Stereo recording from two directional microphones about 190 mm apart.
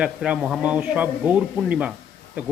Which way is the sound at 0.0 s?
5° right (ahead or behind).